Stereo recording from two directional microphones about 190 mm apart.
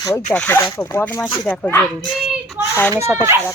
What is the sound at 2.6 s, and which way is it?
Speech, 10° right (ahead or behind).